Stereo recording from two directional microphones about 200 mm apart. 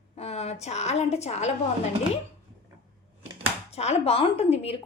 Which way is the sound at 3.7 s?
30° left (ahead or behind).